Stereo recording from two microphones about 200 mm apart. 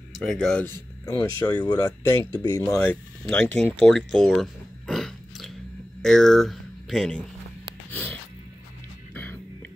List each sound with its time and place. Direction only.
0.3 s speech: 5° left (ahead or behind)
1.0 s speech: 20° left (ahead or behind)
2.8 s speech: 5° left (ahead or behind)
3.8 s a sound: centre (ahead or behind)
6.0 s speech: centre (ahead or behind)
9.1 s music: 10° left (ahead or behind)